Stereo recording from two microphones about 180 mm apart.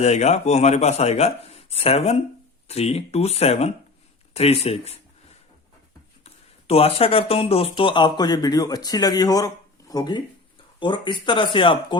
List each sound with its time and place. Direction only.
0.0 s speech: 40° left (ahead or behind)
6.2 s speech: 35° left (ahead or behind)